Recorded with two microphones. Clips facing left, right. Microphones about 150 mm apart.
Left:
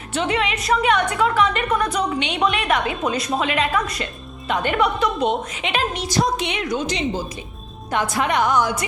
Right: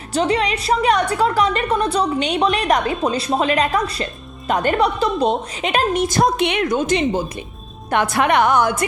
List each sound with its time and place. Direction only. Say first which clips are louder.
0.1 s a woman's voice: right 4 dB; 35° right (ahead or behind); by 7.3 s 55° right (ahead or behind)
7.9 s a woman's voice: right 4 dB; 65° right (ahead or behind)